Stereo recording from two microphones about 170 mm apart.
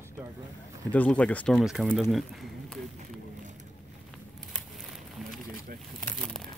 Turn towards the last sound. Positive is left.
turn(degrees=5)  # may be behind; listen again after turning